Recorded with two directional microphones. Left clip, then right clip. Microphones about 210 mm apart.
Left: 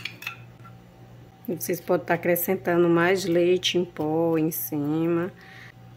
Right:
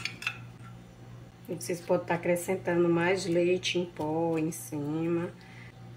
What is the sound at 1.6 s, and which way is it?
A woman's voice, 50° left (ahead or behind).